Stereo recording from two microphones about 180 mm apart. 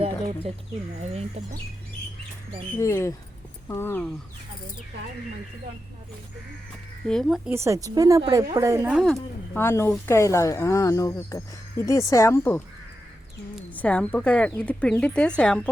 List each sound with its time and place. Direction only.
1.0 s speech: 35° right (ahead or behind)
2.7 s speech: 15° left (ahead or behind)
7.0 s speech: 5° left (ahead or behind)
7.5 s a woman's voice: 15° right (ahead or behind)
9.6 s speech: 15° left (ahead or behind)
13.7 s speech: 5° left (ahead or behind)